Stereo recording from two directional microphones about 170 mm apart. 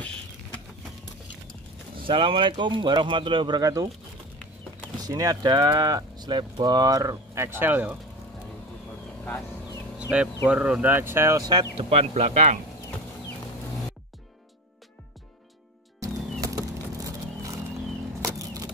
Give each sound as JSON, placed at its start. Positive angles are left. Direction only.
{"t": 2.0, "sound": "speech", "side_deg": -30}
{"t": 4.9, "sound": "speech", "side_deg": -20}
{"t": 10.1, "sound": "speech", "side_deg": -5}
{"t": 11.7, "sound": "speech", "side_deg": -40}
{"t": 16.0, "sound": "music", "side_deg": -20}
{"t": 18.2, "sound": "a sound", "side_deg": -20}